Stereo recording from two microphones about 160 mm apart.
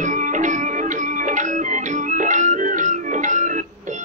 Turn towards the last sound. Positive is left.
turn(degrees=-50)  # may be behind; listen again after turning